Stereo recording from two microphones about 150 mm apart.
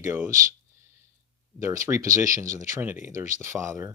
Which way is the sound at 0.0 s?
15° right (ahead or behind).